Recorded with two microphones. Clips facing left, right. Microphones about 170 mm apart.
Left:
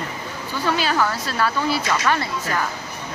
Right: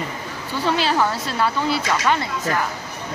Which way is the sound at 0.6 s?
25° right (ahead or behind).